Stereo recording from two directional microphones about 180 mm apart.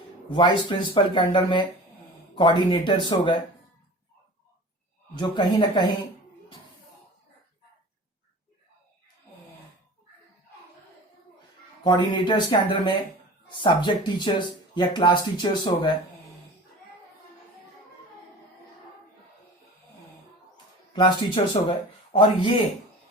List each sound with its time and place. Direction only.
0.3 s speech: 25° left (ahead or behind)
5.1 s speech: 25° left (ahead or behind)
11.8 s speech: 25° left (ahead or behind)
20.9 s speech: 25° left (ahead or behind)